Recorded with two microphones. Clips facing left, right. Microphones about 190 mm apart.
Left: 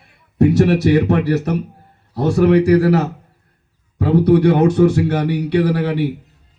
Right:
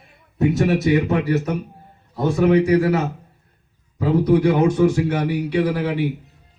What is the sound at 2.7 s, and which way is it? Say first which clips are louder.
Speech: left 4 dB; 35° left (ahead or behind).